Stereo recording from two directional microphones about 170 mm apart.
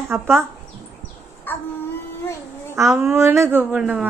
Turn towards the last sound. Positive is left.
turn(degrees=-5)  # may be behind; listen again after turning